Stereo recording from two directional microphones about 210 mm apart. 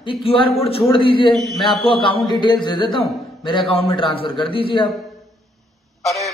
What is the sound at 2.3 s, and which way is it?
A man's voice, 20° left (ahead or behind).